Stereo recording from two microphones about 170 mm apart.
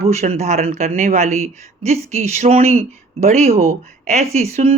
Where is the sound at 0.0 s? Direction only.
40° right (ahead or behind).